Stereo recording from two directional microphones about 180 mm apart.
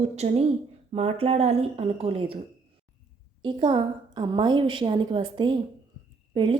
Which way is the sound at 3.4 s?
25° right (ahead or behind).